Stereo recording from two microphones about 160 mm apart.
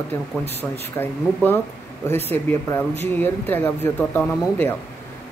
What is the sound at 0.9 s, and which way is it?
Speech, 10° left (ahead or behind).